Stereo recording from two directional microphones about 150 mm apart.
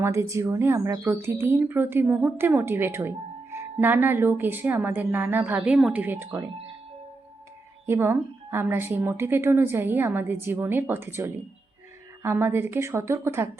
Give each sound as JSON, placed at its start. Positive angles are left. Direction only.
{"t": 0.0, "sound": "speech", "side_deg": -20}
{"t": 7.9, "sound": "speech", "side_deg": -15}